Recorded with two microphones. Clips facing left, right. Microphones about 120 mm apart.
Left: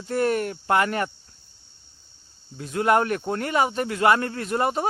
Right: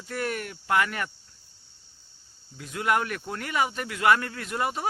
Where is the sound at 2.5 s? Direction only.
35° left (ahead or behind).